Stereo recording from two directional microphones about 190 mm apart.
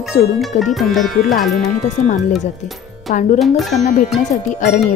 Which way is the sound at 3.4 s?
Centre (ahead or behind).